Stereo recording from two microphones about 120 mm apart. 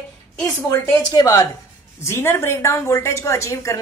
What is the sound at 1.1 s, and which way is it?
A woman's voice, 30° left (ahead or behind).